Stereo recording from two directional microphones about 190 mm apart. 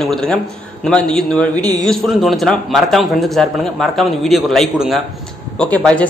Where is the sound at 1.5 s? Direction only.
20° right (ahead or behind).